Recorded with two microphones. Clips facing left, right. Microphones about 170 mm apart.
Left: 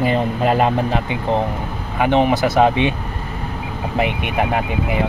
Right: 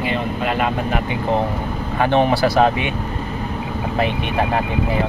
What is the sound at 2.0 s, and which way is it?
Speech, 15° left (ahead or behind).